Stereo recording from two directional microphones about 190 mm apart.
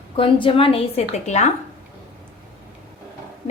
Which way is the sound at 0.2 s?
25° left (ahead or behind).